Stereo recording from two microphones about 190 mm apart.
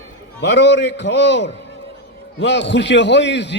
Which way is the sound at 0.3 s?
65° left (ahead or behind).